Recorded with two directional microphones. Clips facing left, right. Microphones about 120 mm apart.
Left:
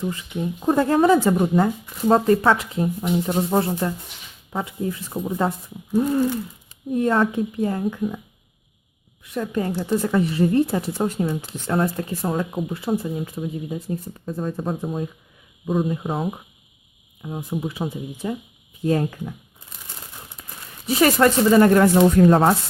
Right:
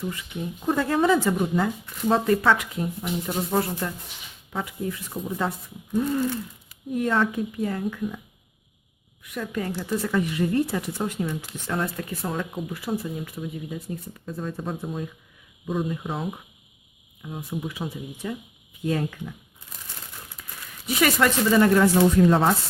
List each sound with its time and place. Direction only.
0.0 s speech: 30° left (ahead or behind)
9.2 s speech: 30° left (ahead or behind)
17.2 s speech: 30° left (ahead or behind)
20.4 s a sound: 35° left (ahead or behind)
20.8 s speech: 35° left (ahead or behind)